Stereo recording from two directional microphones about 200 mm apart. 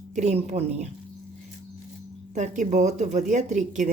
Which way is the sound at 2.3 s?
40° right (ahead or behind).